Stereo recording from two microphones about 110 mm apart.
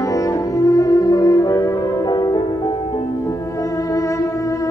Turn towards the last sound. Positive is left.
turn(degrees=30)  # may be behind; listen again after turning